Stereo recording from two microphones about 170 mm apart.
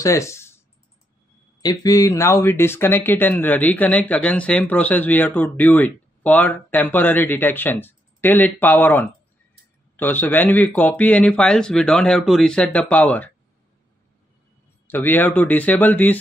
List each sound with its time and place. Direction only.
0.0 s speech: 20° left (ahead or behind)
1.6 s speech: 20° left (ahead or behind)
14.9 s speech: 10° left (ahead or behind)